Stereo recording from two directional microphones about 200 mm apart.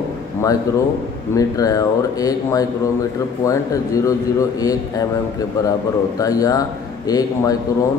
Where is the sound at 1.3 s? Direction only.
15° left (ahead or behind).